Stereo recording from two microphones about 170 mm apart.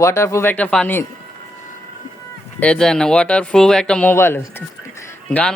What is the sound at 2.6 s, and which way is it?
Speech, 5° left (ahead or behind).